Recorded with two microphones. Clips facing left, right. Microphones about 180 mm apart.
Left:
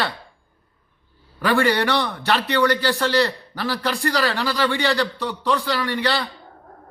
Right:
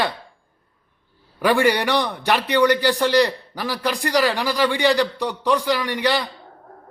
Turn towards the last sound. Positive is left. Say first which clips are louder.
# right 1 dB
turn(degrees=-15)  # may be behind; listen again after turning